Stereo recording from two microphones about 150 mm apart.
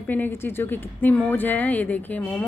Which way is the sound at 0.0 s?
10° left (ahead or behind).